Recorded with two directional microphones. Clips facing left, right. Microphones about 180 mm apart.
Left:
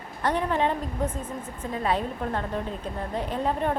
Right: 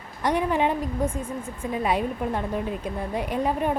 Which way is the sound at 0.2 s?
10° right (ahead or behind).